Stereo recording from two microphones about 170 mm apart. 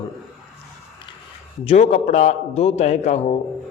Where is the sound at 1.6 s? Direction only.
40° left (ahead or behind).